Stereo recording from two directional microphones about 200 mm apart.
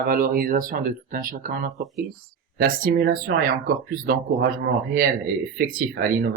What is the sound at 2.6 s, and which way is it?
Speech, 45° right (ahead or behind).